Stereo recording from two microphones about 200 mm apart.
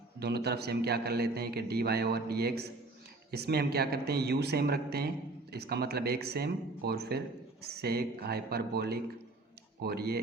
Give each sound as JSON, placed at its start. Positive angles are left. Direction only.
{"t": 0.2, "sound": "a man's voice", "side_deg": -55}